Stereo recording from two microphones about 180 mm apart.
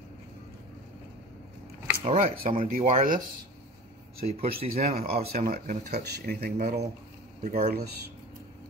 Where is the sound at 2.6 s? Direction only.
50° right (ahead or behind).